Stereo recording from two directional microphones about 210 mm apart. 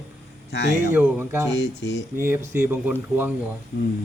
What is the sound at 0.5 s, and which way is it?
Speech, 55° left (ahead or behind).